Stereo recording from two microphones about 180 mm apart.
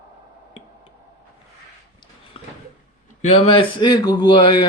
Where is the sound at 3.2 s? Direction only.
35° left (ahead or behind).